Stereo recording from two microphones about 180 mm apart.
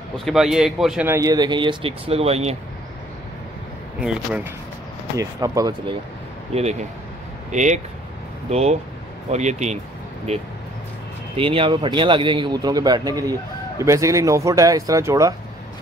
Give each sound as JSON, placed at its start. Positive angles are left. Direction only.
{"t": 0.2, "sound": "a man's voice", "side_deg": 0}
{"t": 1.0, "sound": "a man's voice", "side_deg": -15}
{"t": 4.0, "sound": "a man's voice", "side_deg": -5}
{"t": 5.1, "sound": "a man's voice", "side_deg": -20}
{"t": 6.5, "sound": "a man's voice", "side_deg": -35}